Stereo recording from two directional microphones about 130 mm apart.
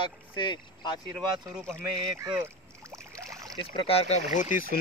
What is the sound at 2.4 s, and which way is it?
Rowboat, 20° right (ahead or behind).